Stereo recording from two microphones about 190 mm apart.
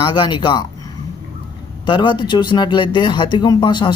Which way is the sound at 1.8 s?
25° left (ahead or behind).